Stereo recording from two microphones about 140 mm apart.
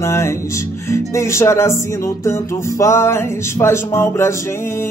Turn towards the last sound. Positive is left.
turn(degrees=20)  # may be behind; listen again after turning